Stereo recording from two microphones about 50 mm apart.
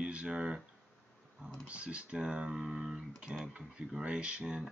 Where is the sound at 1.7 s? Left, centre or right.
Right.